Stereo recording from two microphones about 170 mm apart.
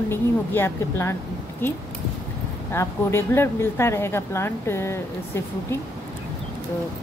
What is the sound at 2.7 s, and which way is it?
A woman's voice, 15° left (ahead or behind).